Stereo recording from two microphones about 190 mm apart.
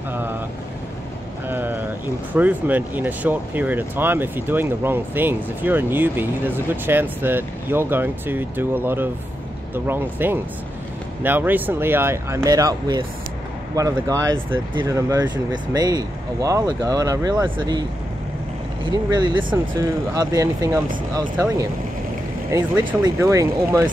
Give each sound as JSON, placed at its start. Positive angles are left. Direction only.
{"t": 1.5, "sound": "speech", "side_deg": -10}
{"t": 18.9, "sound": "speech", "side_deg": -20}
{"t": 22.5, "sound": "speech", "side_deg": -20}